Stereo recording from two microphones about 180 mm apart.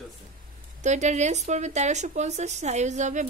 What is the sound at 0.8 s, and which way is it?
Speech, 40° right (ahead or behind).